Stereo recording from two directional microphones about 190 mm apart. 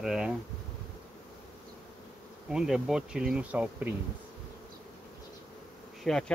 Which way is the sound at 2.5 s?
Centre (ahead or behind).